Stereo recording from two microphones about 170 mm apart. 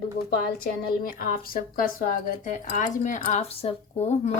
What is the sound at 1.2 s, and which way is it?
Speech, 60° left (ahead or behind).